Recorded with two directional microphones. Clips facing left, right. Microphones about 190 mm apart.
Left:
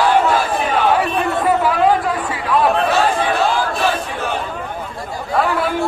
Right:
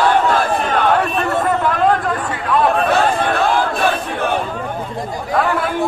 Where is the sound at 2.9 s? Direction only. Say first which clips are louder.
Right 1 dB; 55° right (ahead or behind).